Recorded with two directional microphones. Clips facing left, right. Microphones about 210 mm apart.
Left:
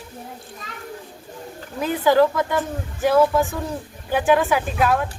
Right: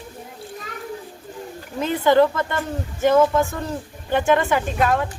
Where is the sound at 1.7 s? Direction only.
Centre (ahead or behind).